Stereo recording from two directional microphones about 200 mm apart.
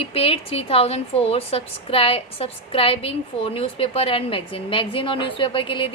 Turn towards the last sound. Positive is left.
turn(degrees=25)  # may be behind; listen again after turning